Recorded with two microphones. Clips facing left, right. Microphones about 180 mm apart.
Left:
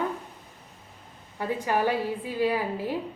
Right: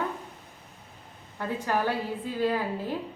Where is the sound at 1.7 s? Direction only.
15° left (ahead or behind).